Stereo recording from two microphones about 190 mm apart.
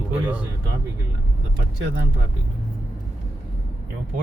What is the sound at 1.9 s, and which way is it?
Speech, 65° right (ahead or behind).